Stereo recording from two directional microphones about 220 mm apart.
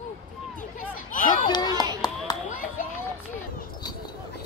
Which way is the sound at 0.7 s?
35° left (ahead or behind).